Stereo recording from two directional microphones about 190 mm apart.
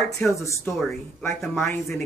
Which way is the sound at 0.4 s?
15° left (ahead or behind).